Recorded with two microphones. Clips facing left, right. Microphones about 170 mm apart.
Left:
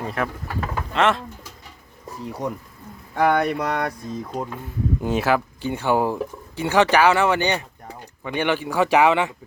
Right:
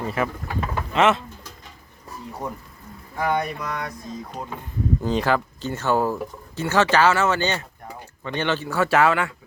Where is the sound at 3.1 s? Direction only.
70° left (ahead or behind).